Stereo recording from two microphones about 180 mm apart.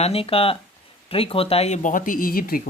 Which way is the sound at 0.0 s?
35° left (ahead or behind).